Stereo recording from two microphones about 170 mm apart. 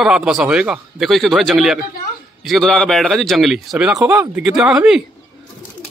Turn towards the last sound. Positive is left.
turn(degrees=-5)  # may be behind; listen again after turning